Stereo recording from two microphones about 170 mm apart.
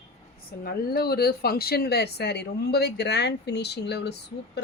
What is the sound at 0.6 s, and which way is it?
Speech, 65° left (ahead or behind).